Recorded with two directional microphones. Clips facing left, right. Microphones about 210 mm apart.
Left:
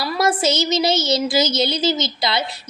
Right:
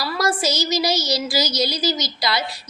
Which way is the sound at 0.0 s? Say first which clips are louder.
Left 3 dB; 25° left (ahead or behind).